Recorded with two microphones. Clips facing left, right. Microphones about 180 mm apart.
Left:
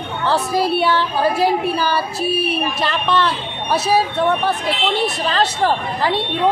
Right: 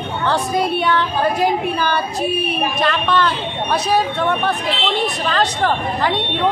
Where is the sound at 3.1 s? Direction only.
5° left (ahead or behind).